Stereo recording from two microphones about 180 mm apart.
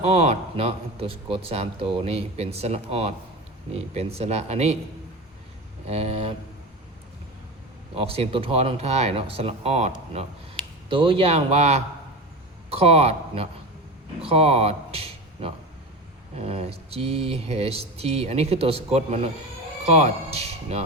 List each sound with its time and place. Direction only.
0.0 s speech: 35° right (ahead or behind)
5.8 s speech: 35° right (ahead or behind)
7.9 s speech: 30° right (ahead or behind)